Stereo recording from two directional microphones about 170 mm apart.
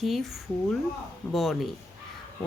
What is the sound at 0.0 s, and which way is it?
Speech, centre (ahead or behind).